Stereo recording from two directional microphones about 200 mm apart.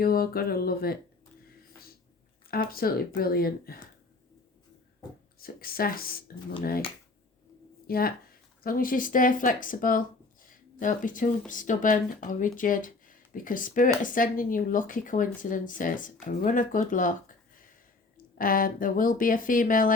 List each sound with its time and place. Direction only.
0.0 s speech: 50° left (ahead or behind)
2.5 s speech: 50° left (ahead or behind)
5.4 s speech: 45° left (ahead or behind)
7.9 s speech: 50° left (ahead or behind)